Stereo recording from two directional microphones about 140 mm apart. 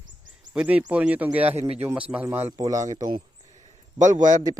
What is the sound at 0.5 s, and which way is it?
Speech, 10° right (ahead or behind).